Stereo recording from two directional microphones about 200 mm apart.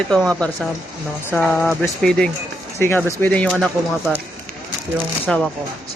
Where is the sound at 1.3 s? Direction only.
5° left (ahead or behind).